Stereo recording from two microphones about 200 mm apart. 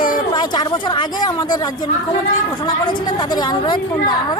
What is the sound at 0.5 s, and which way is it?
Speech, 20° left (ahead or behind).